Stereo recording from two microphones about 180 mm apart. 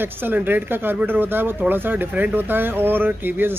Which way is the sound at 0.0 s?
10° right (ahead or behind).